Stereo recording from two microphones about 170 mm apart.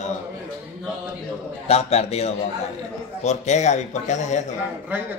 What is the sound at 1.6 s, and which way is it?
A man's voice, 35° left (ahead or behind).